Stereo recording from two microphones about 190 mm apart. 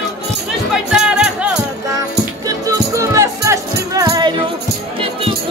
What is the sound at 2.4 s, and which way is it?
Music, 15° right (ahead or behind).